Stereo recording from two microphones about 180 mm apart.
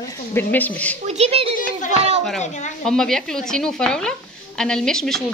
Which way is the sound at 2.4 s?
40° left (ahead or behind).